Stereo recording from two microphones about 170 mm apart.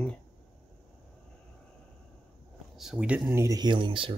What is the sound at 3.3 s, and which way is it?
Speech, 20° right (ahead or behind).